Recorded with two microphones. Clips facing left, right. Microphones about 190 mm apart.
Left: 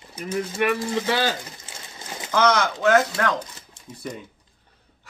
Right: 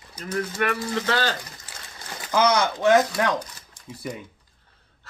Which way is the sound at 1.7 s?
20° left (ahead or behind).